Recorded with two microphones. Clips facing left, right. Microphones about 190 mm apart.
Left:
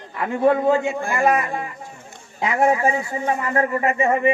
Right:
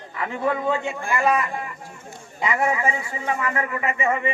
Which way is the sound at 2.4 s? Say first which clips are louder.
Left 4 dB; 50° left (ahead or behind).